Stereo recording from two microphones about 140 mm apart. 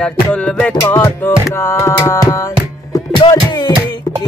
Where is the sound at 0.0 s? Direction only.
10° left (ahead or behind).